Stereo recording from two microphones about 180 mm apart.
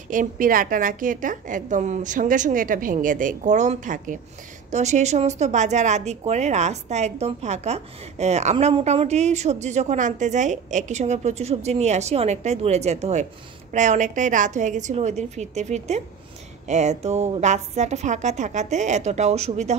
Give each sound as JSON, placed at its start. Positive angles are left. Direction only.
{"t": 0.1, "sound": "a woman's voice", "side_deg": -50}